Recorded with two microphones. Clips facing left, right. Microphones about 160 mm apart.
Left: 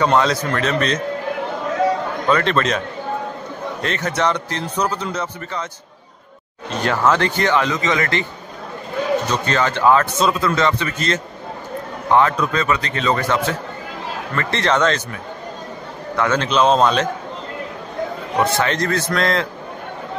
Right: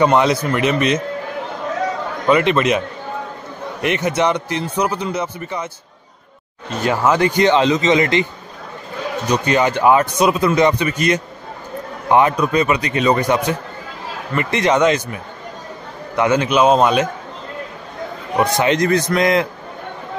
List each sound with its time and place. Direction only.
0.0 s speech: 15° right (ahead or behind)
2.2 s speech: 10° right (ahead or behind)
3.8 s speech: 15° right (ahead or behind)
6.8 s speech: 10° right (ahead or behind)
9.3 s speech: 15° right (ahead or behind)
16.2 s speech: 10° right (ahead or behind)
18.4 s speech: 15° right (ahead or behind)